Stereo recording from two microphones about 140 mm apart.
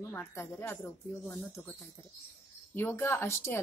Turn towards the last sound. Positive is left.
turn(degrees=20)  # may be behind; listen again after turning